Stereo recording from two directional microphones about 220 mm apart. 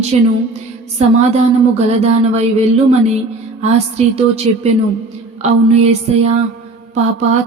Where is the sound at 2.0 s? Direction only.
30° right (ahead or behind).